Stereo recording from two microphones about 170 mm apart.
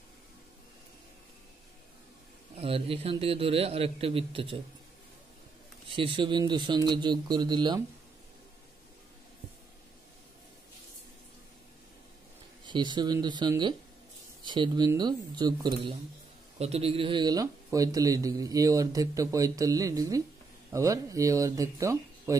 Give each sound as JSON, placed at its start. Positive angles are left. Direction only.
{"t": 2.5, "sound": "a man's voice", "side_deg": -35}
{"t": 5.9, "sound": "speech", "side_deg": -30}
{"t": 12.6, "sound": "speech", "side_deg": -25}